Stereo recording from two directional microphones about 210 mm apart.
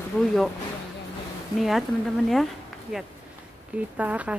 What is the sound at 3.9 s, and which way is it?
Speech, 5° right (ahead or behind).